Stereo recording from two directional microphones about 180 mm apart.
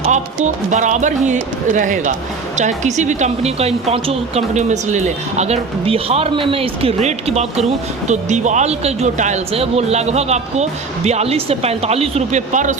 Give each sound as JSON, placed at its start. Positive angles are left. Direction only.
{"t": 0.0, "sound": "speech", "side_deg": -40}